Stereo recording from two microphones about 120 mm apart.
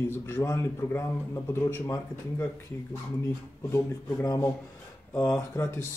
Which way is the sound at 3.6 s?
20° left (ahead or behind).